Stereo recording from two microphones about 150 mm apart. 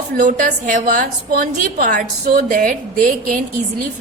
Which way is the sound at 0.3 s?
65° right (ahead or behind).